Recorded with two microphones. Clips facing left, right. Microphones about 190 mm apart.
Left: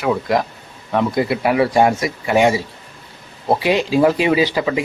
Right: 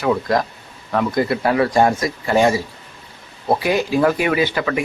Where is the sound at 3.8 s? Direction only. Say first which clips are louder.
Left 4 dB; 20° left (ahead or behind).